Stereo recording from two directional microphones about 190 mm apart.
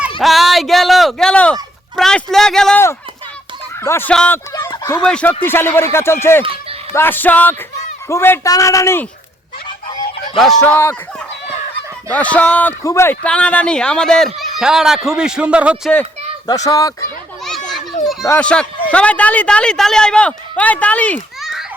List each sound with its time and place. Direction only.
0.2 s a sound: centre (ahead or behind)
2.0 s speech: centre (ahead or behind); by 5.0 s 20° left (ahead or behind)
5.0 s speech: 5° left (ahead or behind)
10.3 s speech: centre (ahead or behind)
12.1 s speech: 5° left (ahead or behind)
16.6 s speech: 20° left (ahead or behind)
17.7 s children playing: centre (ahead or behind)
18.3 s a man's voice: 5° left (ahead or behind)